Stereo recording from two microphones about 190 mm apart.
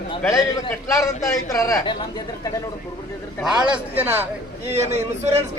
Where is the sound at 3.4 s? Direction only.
5° right (ahead or behind).